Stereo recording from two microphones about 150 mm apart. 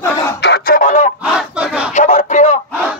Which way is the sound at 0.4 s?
85° left.